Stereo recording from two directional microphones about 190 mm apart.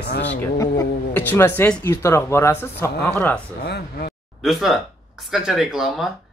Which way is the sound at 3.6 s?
55° left (ahead or behind).